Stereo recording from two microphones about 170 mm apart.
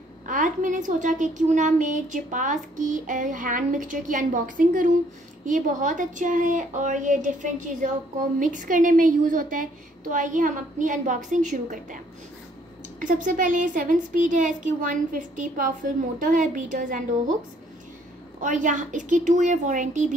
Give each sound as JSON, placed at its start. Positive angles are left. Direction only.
{"t": 0.3, "sound": "a woman's voice", "side_deg": -50}
{"t": 13.0, "sound": "a woman's voice", "side_deg": -50}
{"t": 18.4, "sound": "a woman's voice", "side_deg": -50}